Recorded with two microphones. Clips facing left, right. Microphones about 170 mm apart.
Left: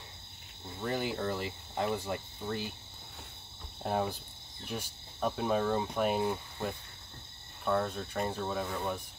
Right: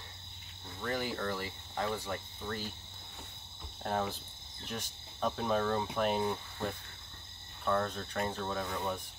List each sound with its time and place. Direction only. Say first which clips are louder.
0.7 s speech: left 2 dB; 20° left (ahead or behind)
3.8 s cricket: left 2 dB; 10° left (ahead or behind)
5.9 s speech: left 1 dB; 5° left (ahead or behind)